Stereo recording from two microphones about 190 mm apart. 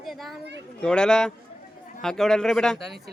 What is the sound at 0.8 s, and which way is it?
Speech, 5° left (ahead or behind).